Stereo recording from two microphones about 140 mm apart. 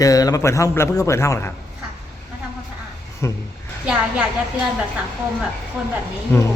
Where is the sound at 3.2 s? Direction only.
20° left (ahead or behind).